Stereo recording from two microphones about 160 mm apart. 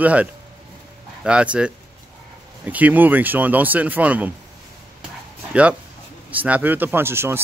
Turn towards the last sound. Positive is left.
turn(degrees=-15)  # may be behind; listen again after turning